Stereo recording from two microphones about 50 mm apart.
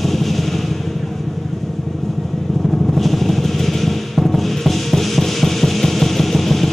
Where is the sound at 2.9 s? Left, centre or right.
Centre.